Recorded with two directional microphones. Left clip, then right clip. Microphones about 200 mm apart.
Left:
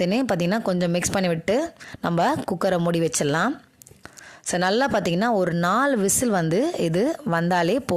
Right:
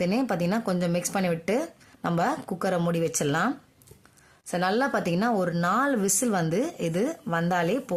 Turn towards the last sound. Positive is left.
turn(degrees=40)  # may be behind; listen again after turning